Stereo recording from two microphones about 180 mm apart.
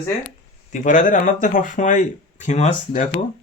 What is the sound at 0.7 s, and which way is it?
Speech, 45° left (ahead or behind).